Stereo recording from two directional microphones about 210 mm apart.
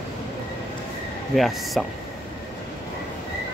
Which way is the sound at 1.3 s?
Centre (ahead or behind).